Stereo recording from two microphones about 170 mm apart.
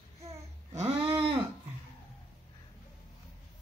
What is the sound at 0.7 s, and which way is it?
Babbling, 15° right (ahead or behind).